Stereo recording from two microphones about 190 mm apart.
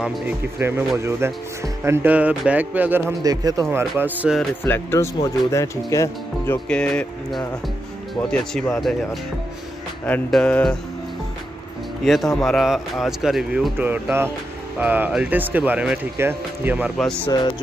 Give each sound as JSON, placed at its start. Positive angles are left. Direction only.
{"t": 0.0, "sound": "speech", "side_deg": -10}
{"t": 4.6, "sound": "speech", "side_deg": 10}
{"t": 10.0, "sound": "speech", "side_deg": 5}
{"t": 12.0, "sound": "speech", "side_deg": 0}
{"t": 17.3, "sound": "speech", "side_deg": 25}